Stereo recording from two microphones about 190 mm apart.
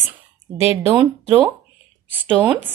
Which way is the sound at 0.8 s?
15° right (ahead or behind).